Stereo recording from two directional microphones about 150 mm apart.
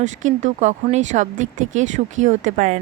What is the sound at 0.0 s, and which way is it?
Speech, 55° right (ahead or behind).